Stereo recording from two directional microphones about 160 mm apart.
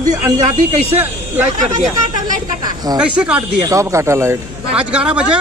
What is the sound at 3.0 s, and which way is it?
A man's voice, 10° right (ahead or behind).